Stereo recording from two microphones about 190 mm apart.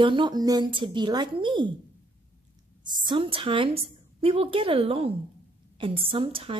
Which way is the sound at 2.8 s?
25° right (ahead or behind).